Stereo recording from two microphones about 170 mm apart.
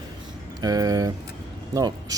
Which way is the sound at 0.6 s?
20° right (ahead or behind).